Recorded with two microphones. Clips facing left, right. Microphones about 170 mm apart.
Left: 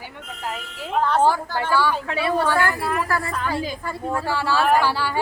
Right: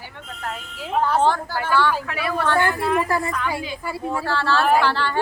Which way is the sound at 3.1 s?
20° right (ahead or behind).